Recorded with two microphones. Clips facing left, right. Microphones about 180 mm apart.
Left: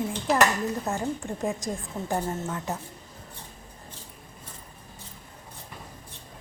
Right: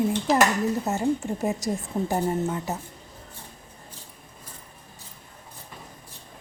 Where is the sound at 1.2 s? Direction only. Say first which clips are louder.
Right 3 dB; 5° right (ahead or behind).